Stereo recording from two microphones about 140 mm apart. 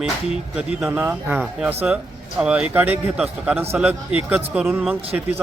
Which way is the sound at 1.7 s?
15° right (ahead or behind).